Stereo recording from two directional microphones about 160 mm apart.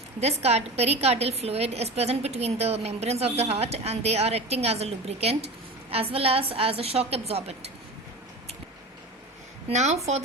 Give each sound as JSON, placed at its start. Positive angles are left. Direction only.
{"t": 0.2, "sound": "a woman's voice", "side_deg": -40}
{"t": 9.6, "sound": "speech", "side_deg": -45}